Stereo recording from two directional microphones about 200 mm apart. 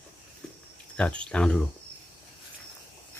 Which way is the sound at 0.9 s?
5° left (ahead or behind).